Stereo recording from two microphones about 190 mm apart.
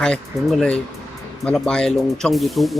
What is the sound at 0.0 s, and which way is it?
Speech, 5° left (ahead or behind).